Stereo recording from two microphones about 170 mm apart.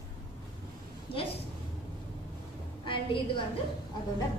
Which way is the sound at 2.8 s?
30° left (ahead or behind).